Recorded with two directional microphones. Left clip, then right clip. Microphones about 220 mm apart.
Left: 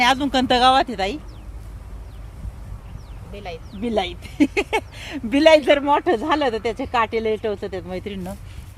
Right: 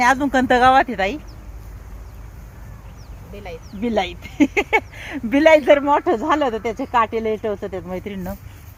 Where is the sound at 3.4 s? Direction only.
5° right (ahead or behind).